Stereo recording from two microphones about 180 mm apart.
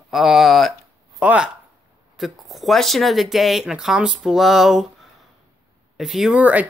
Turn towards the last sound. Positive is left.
turn(degrees=-10)  # may be behind; listen again after turning